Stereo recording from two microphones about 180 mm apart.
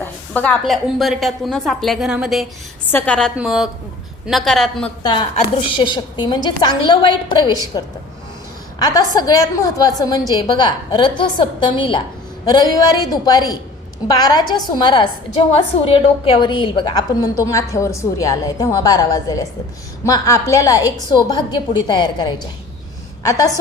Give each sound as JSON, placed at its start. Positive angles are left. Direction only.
{"t": 0.0, "sound": "a woman's voice", "side_deg": 10}
{"t": 5.0, "sound": "a woman's voice", "side_deg": 30}
{"t": 13.2, "sound": "a woman's voice", "side_deg": 20}